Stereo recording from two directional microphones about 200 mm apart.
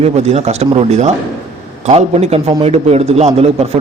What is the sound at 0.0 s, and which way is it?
A man's voice, 30° right (ahead or behind).